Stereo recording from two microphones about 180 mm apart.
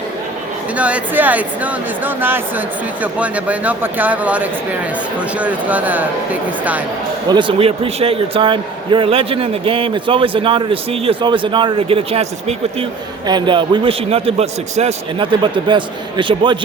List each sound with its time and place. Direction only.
0.8 s speech: 5° right (ahead or behind)
7.3 s a man's voice: 25° right (ahead or behind)
13.2 s a man's voice: 25° right (ahead or behind)